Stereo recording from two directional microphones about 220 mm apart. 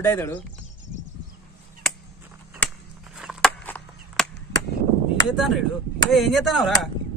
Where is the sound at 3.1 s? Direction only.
Centre (ahead or behind).